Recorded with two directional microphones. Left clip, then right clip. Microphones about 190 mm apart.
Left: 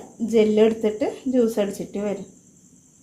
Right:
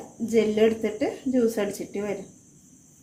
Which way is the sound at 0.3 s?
30° left (ahead or behind).